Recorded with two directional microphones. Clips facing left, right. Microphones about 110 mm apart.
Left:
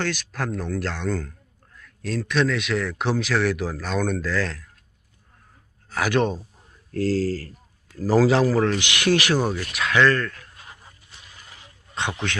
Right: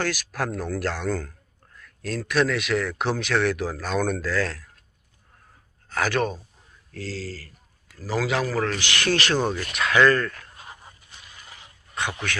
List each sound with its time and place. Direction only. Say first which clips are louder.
0.0 s speech: even; 5° right (ahead or behind)
6.1 s a man's voice: left 4 dB; 25° left (ahead or behind)
6.9 s speech: left 11 dB; 45° left (ahead or behind); by 10.3 s 5° right (ahead or behind)
11.9 s a man's voice: left 1 dB; 25° left (ahead or behind)